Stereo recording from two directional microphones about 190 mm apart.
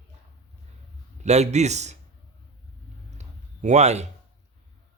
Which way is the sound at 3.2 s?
35° right (ahead or behind).